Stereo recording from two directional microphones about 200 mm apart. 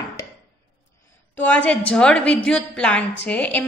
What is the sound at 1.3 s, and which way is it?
A woman's voice, 5° left (ahead or behind).